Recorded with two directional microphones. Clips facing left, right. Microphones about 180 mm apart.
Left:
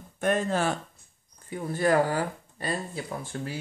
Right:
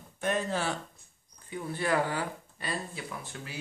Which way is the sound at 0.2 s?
50° left (ahead or behind).